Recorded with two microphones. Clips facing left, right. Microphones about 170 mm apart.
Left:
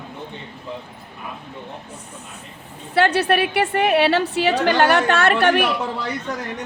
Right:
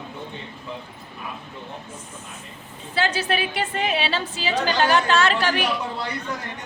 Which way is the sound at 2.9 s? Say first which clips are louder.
Left 6 dB; 65° left (ahead or behind).